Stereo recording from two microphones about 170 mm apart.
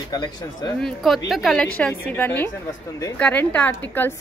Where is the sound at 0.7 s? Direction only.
Centre (ahead or behind).